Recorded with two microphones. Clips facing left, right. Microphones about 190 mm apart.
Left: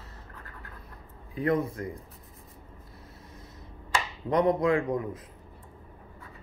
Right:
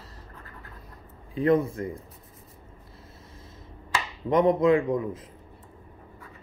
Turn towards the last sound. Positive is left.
turn(degrees=-20)  # may be behind; listen again after turning